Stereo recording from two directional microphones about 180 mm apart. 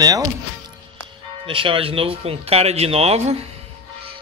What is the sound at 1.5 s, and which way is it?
Speech, 30° right (ahead or behind).